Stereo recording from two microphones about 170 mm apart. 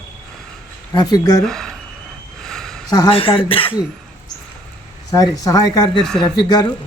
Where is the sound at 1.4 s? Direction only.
Centre (ahead or behind).